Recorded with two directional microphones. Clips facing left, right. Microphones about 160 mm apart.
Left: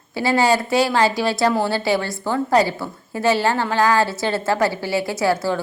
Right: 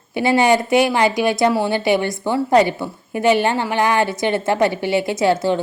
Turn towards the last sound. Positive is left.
turn(degrees=-20)  # may be behind; listen again after turning